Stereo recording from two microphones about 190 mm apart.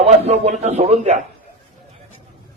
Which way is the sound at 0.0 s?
35° right (ahead or behind).